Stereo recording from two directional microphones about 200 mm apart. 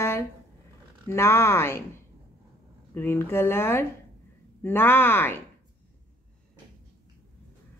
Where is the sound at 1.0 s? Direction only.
15° left (ahead or behind).